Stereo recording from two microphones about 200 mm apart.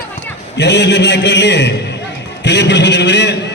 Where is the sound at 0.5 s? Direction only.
60° left (ahead or behind).